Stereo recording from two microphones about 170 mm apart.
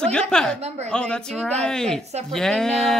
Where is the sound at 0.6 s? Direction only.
40° right (ahead or behind).